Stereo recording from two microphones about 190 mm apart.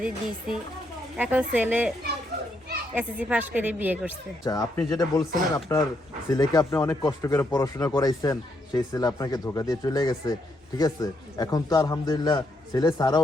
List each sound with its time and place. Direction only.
0.0 s speech: 5° right (ahead or behind)
2.9 s speech: 5° right (ahead or behind)
4.4 s speech: 20° left (ahead or behind)